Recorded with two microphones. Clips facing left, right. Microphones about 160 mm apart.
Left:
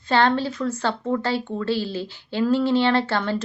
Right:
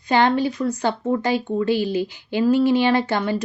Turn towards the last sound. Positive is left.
turn(degrees=-15)  # may be behind; listen again after turning